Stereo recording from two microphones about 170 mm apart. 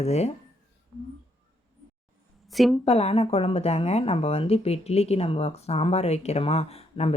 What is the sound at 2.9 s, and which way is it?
Speech, 35° left (ahead or behind).